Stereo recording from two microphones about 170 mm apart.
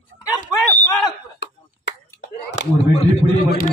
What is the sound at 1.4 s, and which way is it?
Finger snapping, 90° left.